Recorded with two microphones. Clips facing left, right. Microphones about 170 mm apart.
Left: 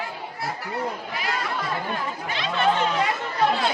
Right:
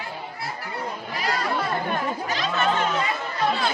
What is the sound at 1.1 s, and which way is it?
Chatter, 40° right (ahead or behind).